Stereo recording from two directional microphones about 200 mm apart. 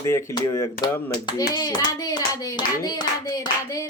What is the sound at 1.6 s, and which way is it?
Hands, 20° left (ahead or behind).